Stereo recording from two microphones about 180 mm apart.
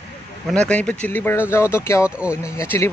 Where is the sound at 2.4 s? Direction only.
15° left (ahead or behind).